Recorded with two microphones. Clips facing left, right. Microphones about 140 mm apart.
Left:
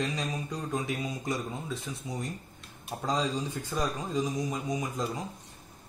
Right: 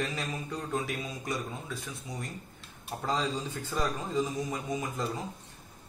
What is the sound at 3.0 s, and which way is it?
A man's voice, 15° left (ahead or behind).